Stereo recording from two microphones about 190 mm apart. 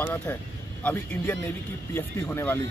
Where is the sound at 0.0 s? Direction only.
10° left (ahead or behind).